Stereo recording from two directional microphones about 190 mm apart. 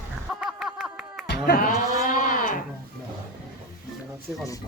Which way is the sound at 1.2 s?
55° left (ahead or behind).